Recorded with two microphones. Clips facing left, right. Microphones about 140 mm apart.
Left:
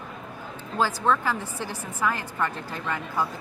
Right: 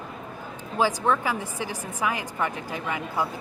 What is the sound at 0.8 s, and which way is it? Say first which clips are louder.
A woman's voice: right 1 dB; 15° right (ahead or behind).